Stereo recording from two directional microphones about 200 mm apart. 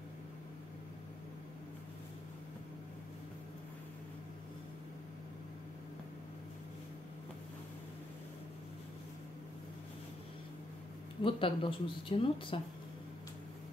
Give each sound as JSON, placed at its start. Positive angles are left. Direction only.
{"t": 11.2, "sound": "speech", "side_deg": 25}